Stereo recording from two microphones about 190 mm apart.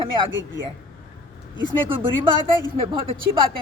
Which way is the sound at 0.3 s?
80° right.